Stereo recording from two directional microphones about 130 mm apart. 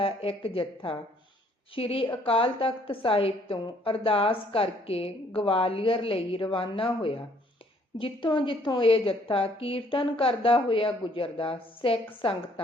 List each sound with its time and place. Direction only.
0.0 s a woman's voice: 45° left (ahead or behind)